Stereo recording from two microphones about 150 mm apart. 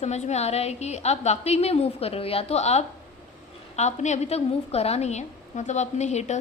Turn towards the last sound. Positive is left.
turn(degrees=50)  # may be behind; listen again after turning